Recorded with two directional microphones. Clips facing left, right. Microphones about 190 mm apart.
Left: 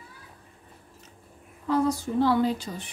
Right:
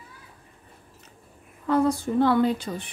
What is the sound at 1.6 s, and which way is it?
A woman's voice, 55° right (ahead or behind).